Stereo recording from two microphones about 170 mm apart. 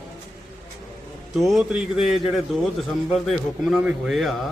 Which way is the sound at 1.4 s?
Centre (ahead or behind).